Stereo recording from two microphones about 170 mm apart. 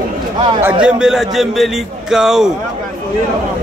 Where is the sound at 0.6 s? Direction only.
10° right (ahead or behind).